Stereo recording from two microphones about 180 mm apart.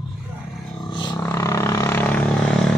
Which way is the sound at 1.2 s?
15° left (ahead or behind).